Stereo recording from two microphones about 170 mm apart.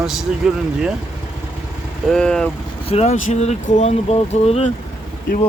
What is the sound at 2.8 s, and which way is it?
Speech, 40° left (ahead or behind).